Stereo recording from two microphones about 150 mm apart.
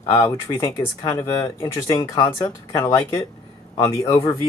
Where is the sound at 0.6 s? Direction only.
20° left (ahead or behind).